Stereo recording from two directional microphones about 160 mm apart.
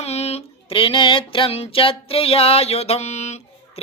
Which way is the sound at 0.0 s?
40° left (ahead or behind).